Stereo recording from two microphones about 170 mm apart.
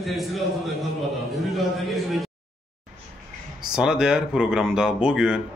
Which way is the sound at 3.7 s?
5° right (ahead or behind).